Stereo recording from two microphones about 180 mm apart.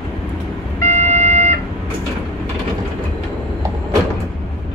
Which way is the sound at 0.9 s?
40° right (ahead or behind).